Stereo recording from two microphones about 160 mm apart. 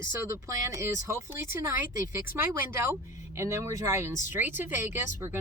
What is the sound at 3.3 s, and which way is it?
Speech, 15° right (ahead or behind).